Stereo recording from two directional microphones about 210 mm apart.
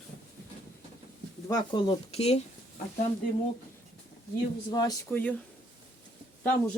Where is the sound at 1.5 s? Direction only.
20° left (ahead or behind).